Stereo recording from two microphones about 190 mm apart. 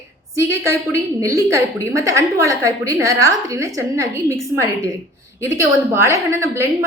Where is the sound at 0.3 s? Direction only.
15° right (ahead or behind).